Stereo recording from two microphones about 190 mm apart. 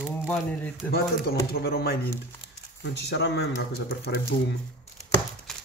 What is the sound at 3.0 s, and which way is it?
Speech, 60° left (ahead or behind).